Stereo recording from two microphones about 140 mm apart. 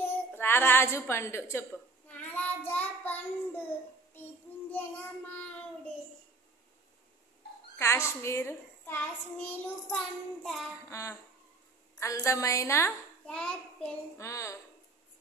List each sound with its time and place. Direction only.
0.0 s a sound: 15° left (ahead or behind)
4.1 s child singing: 15° left (ahead or behind)
7.7 s a child's voice: 20° left (ahead or behind); by 10.7 s centre (ahead or behind)
10.9 s a woman's voice: 20° left (ahead or behind)
13.3 s a child's voice: 5° left (ahead or behind)
14.1 s a woman's voice: 20° left (ahead or behind)